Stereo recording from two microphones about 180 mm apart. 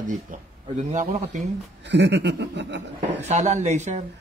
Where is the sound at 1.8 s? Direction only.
70° right (ahead or behind).